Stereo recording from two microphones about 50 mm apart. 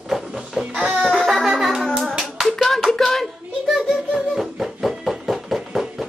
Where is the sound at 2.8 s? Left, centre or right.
Centre.